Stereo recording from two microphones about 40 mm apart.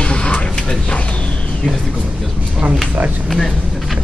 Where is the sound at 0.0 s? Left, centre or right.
Left.